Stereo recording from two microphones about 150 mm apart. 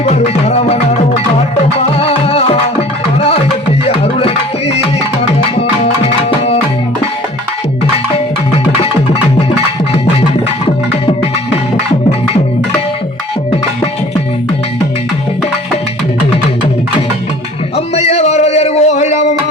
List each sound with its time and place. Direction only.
0.0 s music: 45° left (ahead or behind)
2.0 s music: 40° left (ahead or behind)
17.7 s music: 45° left (ahead or behind)